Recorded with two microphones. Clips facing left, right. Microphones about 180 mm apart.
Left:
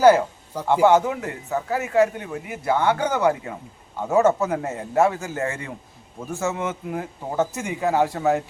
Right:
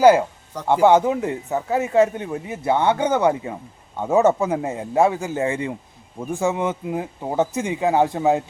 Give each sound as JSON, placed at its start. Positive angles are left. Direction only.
{"t": 0.5, "sound": "speech", "side_deg": 5}
{"t": 0.9, "sound": "a man's voice", "side_deg": -20}